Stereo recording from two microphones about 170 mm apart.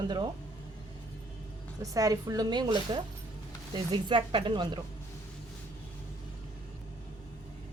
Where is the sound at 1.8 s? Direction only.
20° right (ahead or behind).